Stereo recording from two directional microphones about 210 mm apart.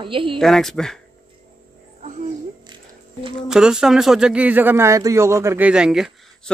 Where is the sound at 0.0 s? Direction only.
25° right (ahead or behind).